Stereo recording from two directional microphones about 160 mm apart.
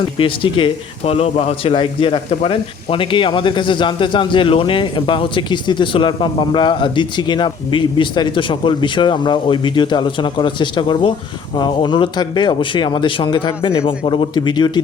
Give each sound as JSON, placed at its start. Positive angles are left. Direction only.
{"t": 0.2, "sound": "a man's voice", "side_deg": 35}